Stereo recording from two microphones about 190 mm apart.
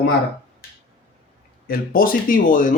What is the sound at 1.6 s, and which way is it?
Speech, 50° left (ahead or behind).